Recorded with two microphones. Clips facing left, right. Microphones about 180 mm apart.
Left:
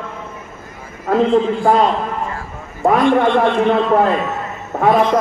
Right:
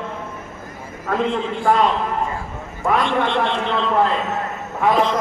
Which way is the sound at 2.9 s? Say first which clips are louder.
Left 6 dB; 50° left (ahead or behind).